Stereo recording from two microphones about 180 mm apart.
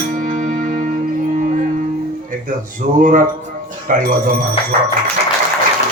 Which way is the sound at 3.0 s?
45° right (ahead or behind).